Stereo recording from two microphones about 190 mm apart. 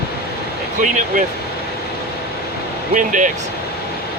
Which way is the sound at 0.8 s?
45° right (ahead or behind).